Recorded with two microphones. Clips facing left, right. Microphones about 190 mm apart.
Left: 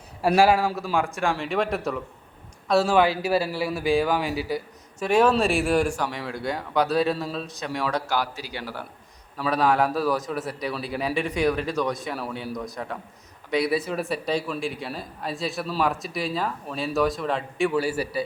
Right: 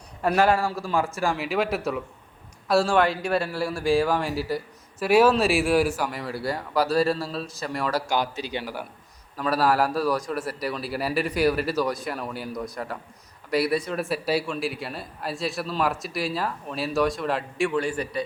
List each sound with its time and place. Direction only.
0.2 s a man's voice: 10° left (ahead or behind)
8.0 s a man's voice: 20° right (ahead or behind)
9.4 s a man's voice: 5° right (ahead or behind)